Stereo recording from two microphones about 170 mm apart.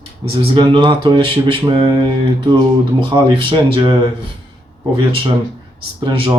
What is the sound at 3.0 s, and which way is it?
Speech, 30° right (ahead or behind).